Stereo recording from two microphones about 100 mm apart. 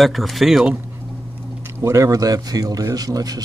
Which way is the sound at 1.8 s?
30° right (ahead or behind).